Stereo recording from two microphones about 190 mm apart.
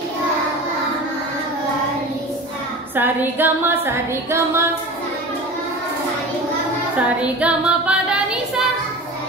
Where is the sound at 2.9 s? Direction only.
10° right (ahead or behind).